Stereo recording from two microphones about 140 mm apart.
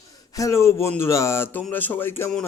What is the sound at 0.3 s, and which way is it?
Speech, 20° left (ahead or behind).